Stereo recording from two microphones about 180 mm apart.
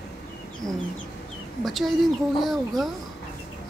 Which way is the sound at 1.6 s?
Centre (ahead or behind).